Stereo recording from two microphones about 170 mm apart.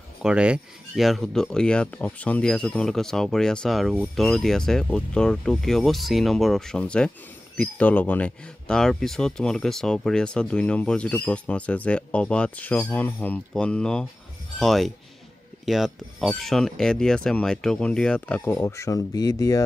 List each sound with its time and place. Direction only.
0.2 s speech: 5° right (ahead or behind); by 19.6 s 20° left (ahead or behind)